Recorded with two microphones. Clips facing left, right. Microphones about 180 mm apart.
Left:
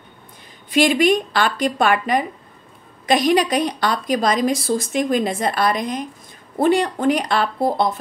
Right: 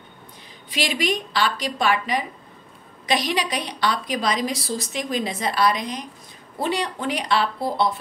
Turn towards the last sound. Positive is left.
turn(degrees=45)  # may be behind; listen again after turning